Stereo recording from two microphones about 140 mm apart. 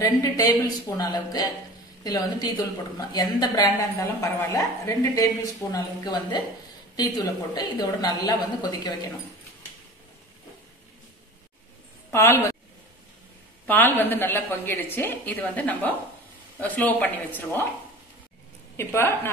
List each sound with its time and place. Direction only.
0.0 s speech: 25° left (ahead or behind)
12.1 s speech: 20° left (ahead or behind)
13.7 s a woman's voice: 15° left (ahead or behind)
18.8 s a woman's voice: 15° left (ahead or behind)